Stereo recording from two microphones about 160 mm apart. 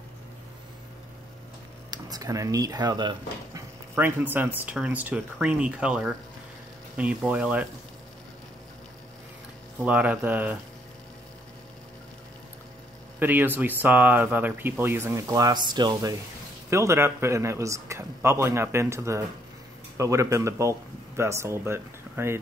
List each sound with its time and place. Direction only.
1.9 s speech: 25° right (ahead or behind)
3.9 s speech: 15° right (ahead or behind)
9.8 s speech: 10° right (ahead or behind)
13.2 s speech: 10° right (ahead or behind)